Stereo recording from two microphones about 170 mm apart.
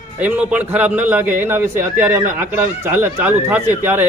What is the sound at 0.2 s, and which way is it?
A man's voice, 10° right (ahead or behind).